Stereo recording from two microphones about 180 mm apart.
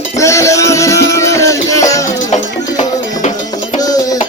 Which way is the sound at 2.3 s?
40° left (ahead or behind).